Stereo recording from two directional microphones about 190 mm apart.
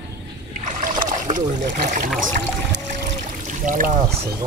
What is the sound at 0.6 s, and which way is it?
Trickle, 40° right (ahead or behind).